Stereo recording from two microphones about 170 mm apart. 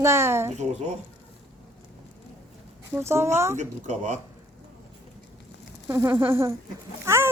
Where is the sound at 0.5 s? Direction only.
40° right (ahead or behind).